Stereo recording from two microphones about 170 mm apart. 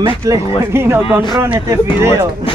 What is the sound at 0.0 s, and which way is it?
Speech, 15° right (ahead or behind).